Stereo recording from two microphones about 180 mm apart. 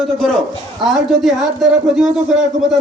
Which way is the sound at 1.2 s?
Centre (ahead or behind).